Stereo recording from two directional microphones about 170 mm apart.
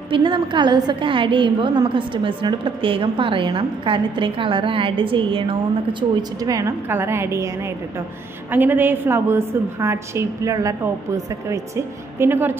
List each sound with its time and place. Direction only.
0.1 s a woman's voice: 30° right (ahead or behind); by 12.5 s 10° right (ahead or behind)